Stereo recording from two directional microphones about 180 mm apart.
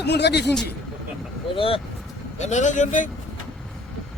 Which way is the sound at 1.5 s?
30° left (ahead or behind).